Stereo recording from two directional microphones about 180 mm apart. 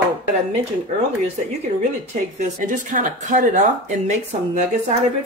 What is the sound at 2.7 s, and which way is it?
Speech, 45° right (ahead or behind).